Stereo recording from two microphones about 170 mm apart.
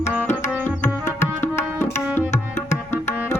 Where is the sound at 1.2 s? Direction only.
15° left (ahead or behind).